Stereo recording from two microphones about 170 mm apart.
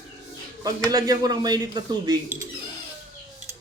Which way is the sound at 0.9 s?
20° right (ahead or behind).